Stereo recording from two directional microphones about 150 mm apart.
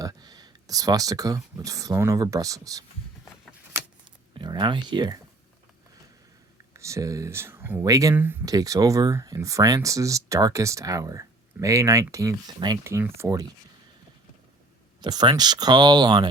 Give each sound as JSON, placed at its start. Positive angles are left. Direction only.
{"t": 0.0, "sound": "speech", "side_deg": -25}
{"t": 3.7, "sound": "keys jangling", "side_deg": -20}
{"t": 4.4, "sound": "speech", "side_deg": -30}
{"t": 6.7, "sound": "speech", "side_deg": -20}
{"t": 8.4, "sound": "speech", "side_deg": -25}
{"t": 15.0, "sound": "speech", "side_deg": -30}